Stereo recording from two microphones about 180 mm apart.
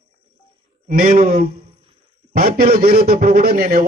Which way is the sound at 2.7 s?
55° right (ahead or behind).